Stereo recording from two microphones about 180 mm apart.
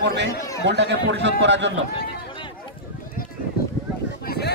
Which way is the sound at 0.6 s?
75° right (ahead or behind).